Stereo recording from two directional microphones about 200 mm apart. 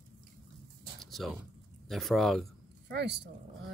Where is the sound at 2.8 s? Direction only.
60° right (ahead or behind).